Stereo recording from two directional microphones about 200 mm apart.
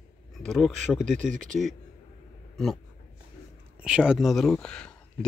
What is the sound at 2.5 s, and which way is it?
Speech, centre (ahead or behind).